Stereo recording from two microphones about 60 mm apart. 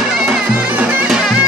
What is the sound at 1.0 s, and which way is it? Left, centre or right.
Music, centre.